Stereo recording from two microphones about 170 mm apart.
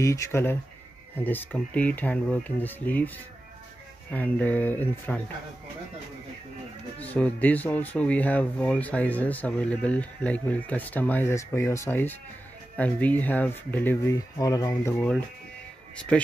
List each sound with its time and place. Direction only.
0.0 s speech: 15° left (ahead or behind)
4.1 s speech: 10° left (ahead or behind)
7.0 s speech: 10° left (ahead or behind)
14.1 s speech: 20° left (ahead or behind)